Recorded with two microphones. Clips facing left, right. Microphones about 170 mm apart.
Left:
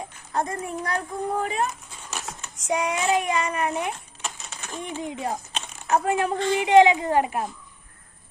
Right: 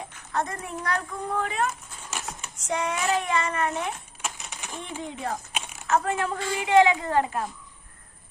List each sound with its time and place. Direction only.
0.3 s a woman's voice: 30° left (ahead or behind)
2.1 s speech: 10° right (ahead or behind)
2.6 s speech: 10° left (ahead or behind)
4.2 s typewriter: 15° right (ahead or behind)
5.0 s a woman's voice: 20° left (ahead or behind)
5.5 s a sound: 10° right (ahead or behind)
5.9 s a woman's voice: 15° left (ahead or behind)